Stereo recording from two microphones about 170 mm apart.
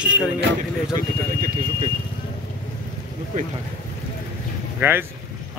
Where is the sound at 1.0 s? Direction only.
50° right (ahead or behind).